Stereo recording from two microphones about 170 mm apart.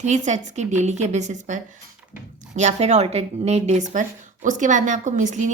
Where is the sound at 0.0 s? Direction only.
45° right (ahead or behind).